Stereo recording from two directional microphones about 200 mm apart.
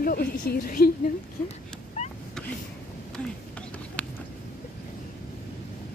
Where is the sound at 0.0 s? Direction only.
50° left (ahead or behind).